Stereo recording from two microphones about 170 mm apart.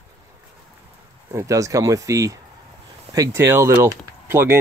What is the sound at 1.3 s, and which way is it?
Speech, 20° right (ahead or behind).